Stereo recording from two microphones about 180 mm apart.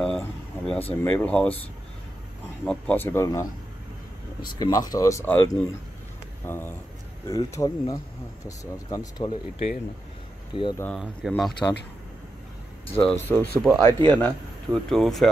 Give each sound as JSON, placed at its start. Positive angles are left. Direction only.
{"t": 0.0, "sound": "a sound", "side_deg": 5}
{"t": 1.0, "sound": "speech", "side_deg": 10}
{"t": 2.6, "sound": "speech", "side_deg": 10}
{"t": 4.6, "sound": "speech", "side_deg": 20}
{"t": 10.5, "sound": "speech", "side_deg": 25}
{"t": 11.0, "sound": "speech", "side_deg": 0}
{"t": 12.8, "sound": "speech", "side_deg": 10}
{"t": 13.6, "sound": "speech", "side_deg": -20}
{"t": 14.0, "sound": "speech", "side_deg": 10}